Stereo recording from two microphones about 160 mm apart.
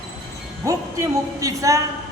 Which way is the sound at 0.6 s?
20° right (ahead or behind).